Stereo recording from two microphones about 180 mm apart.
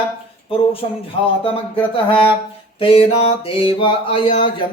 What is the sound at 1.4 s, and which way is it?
Speech, 30° left (ahead or behind).